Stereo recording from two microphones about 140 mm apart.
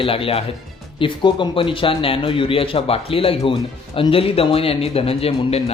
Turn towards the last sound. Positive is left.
turn(degrees=45)  # may be behind; listen again after turning